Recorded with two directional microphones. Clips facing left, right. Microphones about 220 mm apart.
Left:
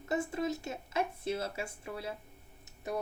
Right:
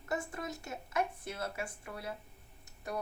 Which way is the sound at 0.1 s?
25° left (ahead or behind).